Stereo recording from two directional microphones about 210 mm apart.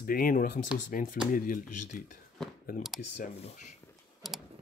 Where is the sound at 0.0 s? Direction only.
45° left (ahead or behind).